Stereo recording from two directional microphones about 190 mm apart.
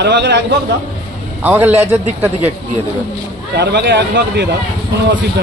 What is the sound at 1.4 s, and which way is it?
Speech, 10° right (ahead or behind).